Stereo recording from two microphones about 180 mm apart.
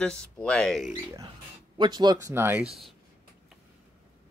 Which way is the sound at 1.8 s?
25° right (ahead or behind).